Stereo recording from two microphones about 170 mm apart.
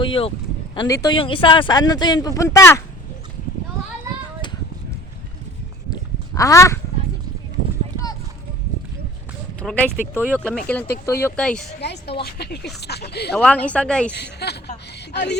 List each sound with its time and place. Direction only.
0.0 s speech: 30° left (ahead or behind)
0.8 s speech: 20° left (ahead or behind)
1.2 s speech: 30° left (ahead or behind)
5.9 s a sound: 20° left (ahead or behind)
9.6 s speech: 5° left (ahead or behind)
10.2 s speech: 10° right (ahead or behind)
10.4 s speech: 5° left (ahead or behind)
11.3 s speech: 5° left (ahead or behind)
11.8 s a woman's voice: 80° left
12.2 s speech: 70° left (ahead or behind)
13.3 s speech: 10° left (ahead or behind)
14.2 s speech: 75° left (ahead or behind)